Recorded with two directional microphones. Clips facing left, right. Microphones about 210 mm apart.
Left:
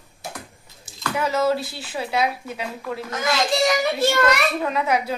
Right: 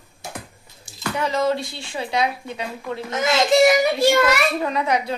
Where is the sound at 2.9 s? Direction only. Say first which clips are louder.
Right 4 dB; 25° right (ahead or behind).